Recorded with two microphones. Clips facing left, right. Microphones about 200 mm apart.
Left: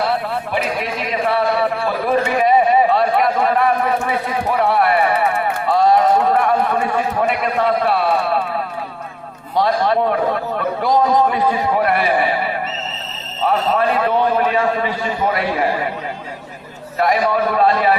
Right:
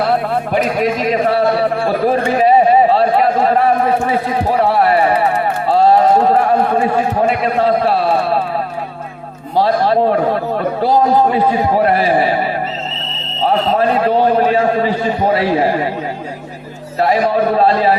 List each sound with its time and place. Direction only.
0.0 s a sound: 45° right (ahead or behind)
9.6 s a man's voice: 35° right (ahead or behind)
17.0 s a man's voice: 30° right (ahead or behind)